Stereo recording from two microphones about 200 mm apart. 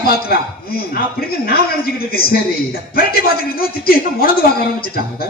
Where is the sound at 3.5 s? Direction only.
50° left (ahead or behind).